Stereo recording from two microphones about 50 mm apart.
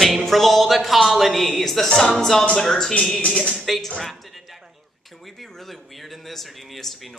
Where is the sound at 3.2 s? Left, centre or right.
Left.